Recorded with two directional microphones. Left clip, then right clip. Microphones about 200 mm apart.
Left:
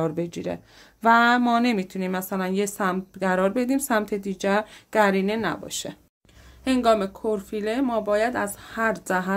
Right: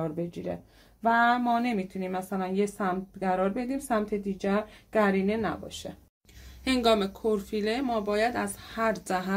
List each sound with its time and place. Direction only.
0.0 s speech: 50° left (ahead or behind)
6.6 s speech: 30° left (ahead or behind)